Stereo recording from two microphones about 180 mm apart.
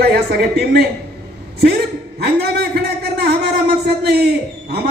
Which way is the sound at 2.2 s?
65° right (ahead or behind).